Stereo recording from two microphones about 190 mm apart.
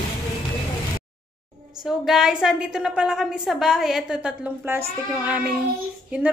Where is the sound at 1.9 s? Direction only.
Centre (ahead or behind).